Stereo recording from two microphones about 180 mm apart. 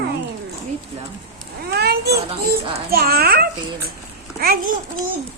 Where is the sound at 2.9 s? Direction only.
60° right (ahead or behind).